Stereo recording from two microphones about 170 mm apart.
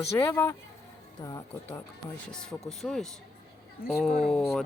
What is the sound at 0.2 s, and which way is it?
Speech, 15° left (ahead or behind).